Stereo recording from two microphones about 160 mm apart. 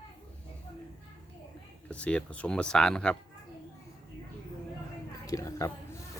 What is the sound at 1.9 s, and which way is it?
Speech, 5° left (ahead or behind).